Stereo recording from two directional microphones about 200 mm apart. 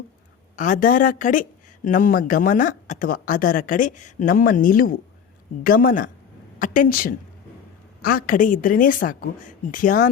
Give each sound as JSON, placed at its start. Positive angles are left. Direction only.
{"t": 0.5, "sound": "a woman's voice", "side_deg": 40}